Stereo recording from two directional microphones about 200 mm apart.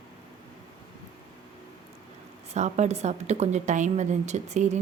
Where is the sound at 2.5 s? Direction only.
35° right (ahead or behind).